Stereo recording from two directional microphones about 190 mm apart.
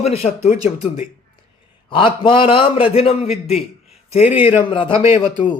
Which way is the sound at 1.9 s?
25° left (ahead or behind).